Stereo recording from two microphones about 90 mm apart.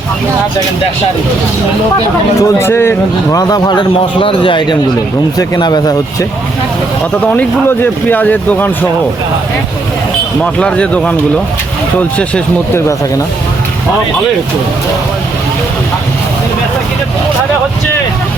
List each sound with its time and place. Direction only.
2.4 s speech: 25° left (ahead or behind)
3.3 s speech: 50° left (ahead or behind)
4.2 s a man's voice: 75° left (ahead or behind)
5.5 s speech: 50° left (ahead or behind)
7.2 s speech: 15° left (ahead or behind)
10.4 s speech: 10° left (ahead or behind)